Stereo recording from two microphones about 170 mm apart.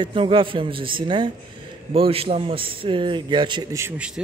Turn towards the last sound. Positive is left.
turn(degrees=-5)  # may be behind; listen again after turning